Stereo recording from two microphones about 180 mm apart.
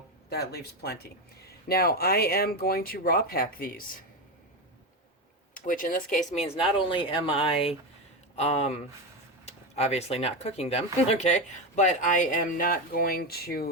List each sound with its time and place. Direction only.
0.3 s speech: 60° left (ahead or behind)
5.5 s speech: 45° left (ahead or behind)
6.4 s speech: 30° left (ahead or behind); by 13.7 s 60° left (ahead or behind)